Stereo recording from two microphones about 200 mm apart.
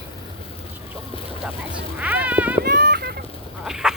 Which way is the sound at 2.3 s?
10° right (ahead or behind).